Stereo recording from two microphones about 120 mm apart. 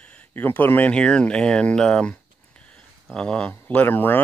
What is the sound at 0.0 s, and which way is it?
Speech, 10° left (ahead or behind).